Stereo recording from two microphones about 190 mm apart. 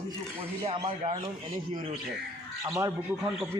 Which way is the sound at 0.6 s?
30° right (ahead or behind).